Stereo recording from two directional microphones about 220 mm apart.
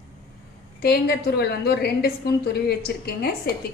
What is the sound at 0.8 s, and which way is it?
A woman's voice, 45° left (ahead or behind).